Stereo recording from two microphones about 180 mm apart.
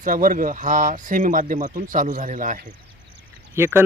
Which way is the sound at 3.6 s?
15° right (ahead or behind).